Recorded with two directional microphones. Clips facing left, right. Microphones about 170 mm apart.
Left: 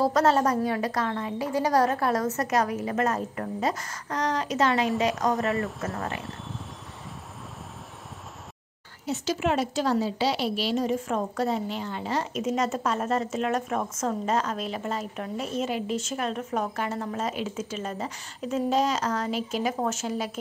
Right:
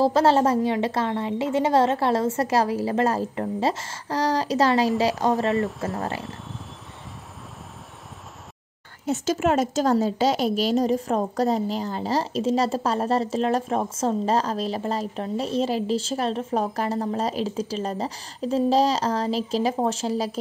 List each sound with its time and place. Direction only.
0.0 s a woman's voice: 30° right (ahead or behind)
9.0 s a woman's voice: 45° right (ahead or behind)